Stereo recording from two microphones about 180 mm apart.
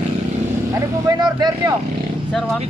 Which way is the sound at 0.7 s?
25° right (ahead or behind).